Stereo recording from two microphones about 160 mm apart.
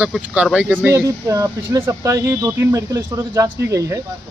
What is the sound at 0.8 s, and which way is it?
Speech, 20° right (ahead or behind).